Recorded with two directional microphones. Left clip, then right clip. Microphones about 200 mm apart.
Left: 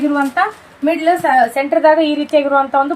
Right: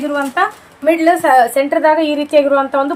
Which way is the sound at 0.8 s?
35° right (ahead or behind).